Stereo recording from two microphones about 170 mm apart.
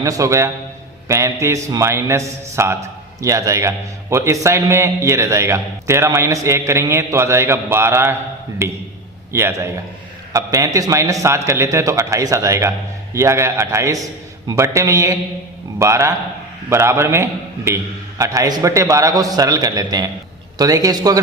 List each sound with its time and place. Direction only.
0.0 s a man's voice: 20° right (ahead or behind)